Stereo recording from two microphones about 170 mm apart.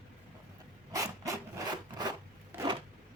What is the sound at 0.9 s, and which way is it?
Rub, 20° right (ahead or behind).